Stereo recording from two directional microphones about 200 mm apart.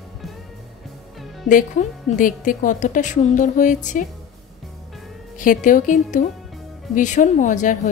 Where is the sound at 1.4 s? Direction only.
40° left (ahead or behind).